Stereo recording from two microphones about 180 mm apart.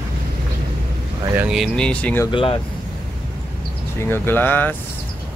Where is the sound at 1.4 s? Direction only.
Centre (ahead or behind).